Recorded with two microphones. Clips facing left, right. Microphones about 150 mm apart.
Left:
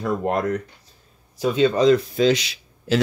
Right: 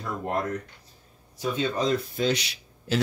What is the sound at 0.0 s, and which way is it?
Speech, 85° left.